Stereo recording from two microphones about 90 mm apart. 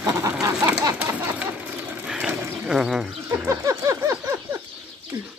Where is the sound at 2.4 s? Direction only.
20° right (ahead or behind).